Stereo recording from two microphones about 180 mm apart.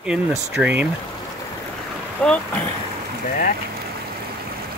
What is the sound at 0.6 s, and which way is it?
Speech, 10° right (ahead or behind).